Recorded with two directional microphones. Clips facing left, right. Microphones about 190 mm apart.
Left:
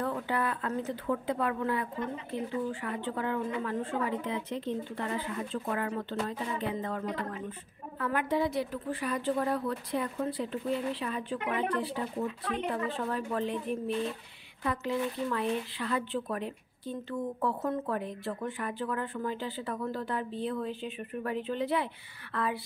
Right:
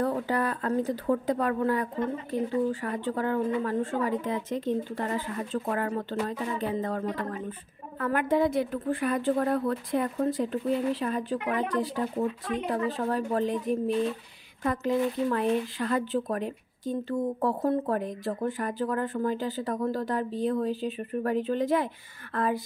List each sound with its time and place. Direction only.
0.0 s a woman's voice: 40° right (ahead or behind)